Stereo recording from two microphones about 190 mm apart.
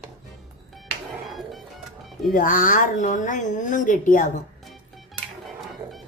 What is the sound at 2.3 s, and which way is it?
Speech, 45° left (ahead or behind).